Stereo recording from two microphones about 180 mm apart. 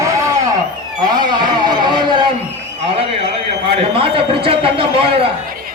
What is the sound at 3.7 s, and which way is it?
A man's voice, 30° right (ahead or behind).